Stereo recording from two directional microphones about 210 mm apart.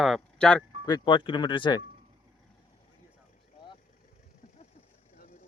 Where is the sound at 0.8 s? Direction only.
20° left (ahead or behind).